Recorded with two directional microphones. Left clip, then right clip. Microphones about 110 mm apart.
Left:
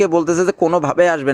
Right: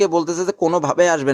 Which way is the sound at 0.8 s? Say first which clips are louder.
Left 1 dB; 40° left (ahead or behind).